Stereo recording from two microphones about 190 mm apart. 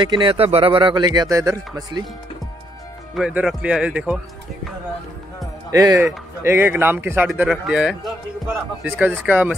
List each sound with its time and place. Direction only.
0.0 s speech: 25° right (ahead or behind)
3.2 s speech: 5° right (ahead or behind)
5.7 s a man's voice: 20° right (ahead or behind)